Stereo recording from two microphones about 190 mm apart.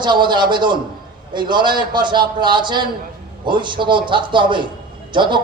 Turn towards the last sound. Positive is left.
turn(degrees=-25)  # may be behind; listen again after turning